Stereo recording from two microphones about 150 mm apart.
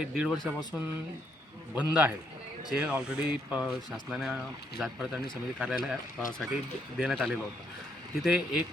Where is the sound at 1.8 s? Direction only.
10° right (ahead or behind).